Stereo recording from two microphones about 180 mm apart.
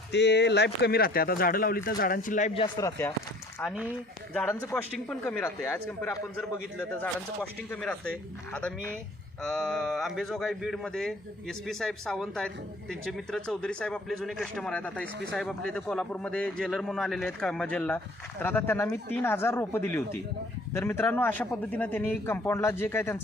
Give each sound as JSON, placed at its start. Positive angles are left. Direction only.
{"t": 0.1, "sound": "speech", "side_deg": 70}
{"t": 3.6, "sound": "a man's voice", "side_deg": 0}
{"t": 4.4, "sound": "a man's voice", "side_deg": 10}
{"t": 7.7, "sound": "a man's voice", "side_deg": 5}
{"t": 9.4, "sound": "a man's voice", "side_deg": 0}